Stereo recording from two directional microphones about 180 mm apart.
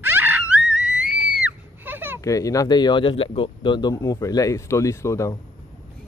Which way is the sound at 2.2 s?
20° left (ahead or behind).